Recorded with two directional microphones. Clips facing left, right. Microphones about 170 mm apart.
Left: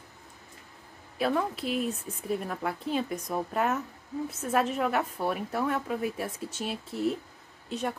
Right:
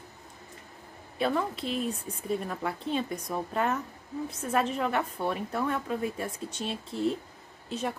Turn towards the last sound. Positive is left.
turn(degrees=0)  # may be behind; listen again after turning